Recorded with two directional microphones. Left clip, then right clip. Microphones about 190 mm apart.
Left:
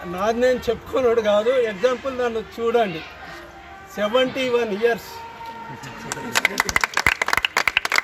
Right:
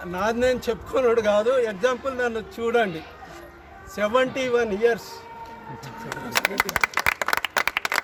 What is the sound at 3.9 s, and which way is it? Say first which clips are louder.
Speech: left 2 dB; centre (ahead or behind).